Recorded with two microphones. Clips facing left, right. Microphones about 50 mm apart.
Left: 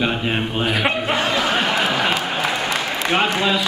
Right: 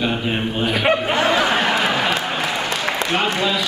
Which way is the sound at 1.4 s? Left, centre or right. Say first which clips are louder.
Right 2 dB; centre.